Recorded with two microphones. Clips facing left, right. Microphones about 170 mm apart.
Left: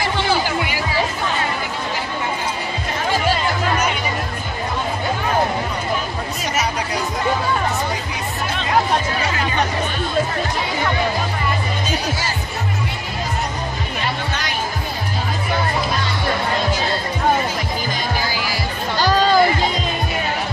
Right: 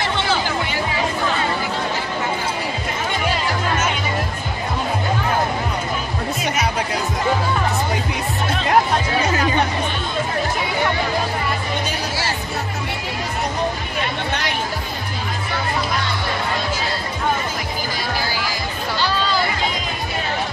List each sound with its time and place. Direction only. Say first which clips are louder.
18.9 s music: left 7 dB; 45° left (ahead or behind)